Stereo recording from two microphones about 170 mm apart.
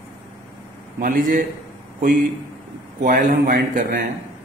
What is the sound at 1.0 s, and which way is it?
Speech, 55° right (ahead or behind).